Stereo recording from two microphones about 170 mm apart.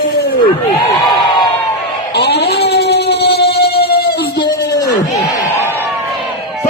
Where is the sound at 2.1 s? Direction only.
75° left (ahead or behind).